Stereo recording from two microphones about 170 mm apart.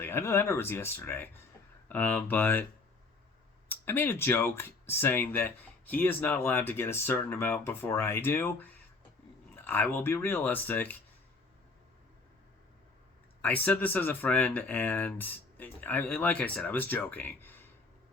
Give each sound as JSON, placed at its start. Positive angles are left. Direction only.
{"t": 0.0, "sound": "speech", "side_deg": 15}
{"t": 3.7, "sound": "speech", "side_deg": 10}
{"t": 13.4, "sound": "speech", "side_deg": 10}